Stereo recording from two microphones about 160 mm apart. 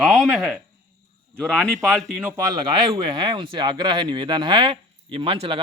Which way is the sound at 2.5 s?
30° right (ahead or behind).